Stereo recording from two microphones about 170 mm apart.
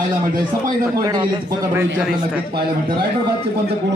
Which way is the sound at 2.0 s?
5° right (ahead or behind).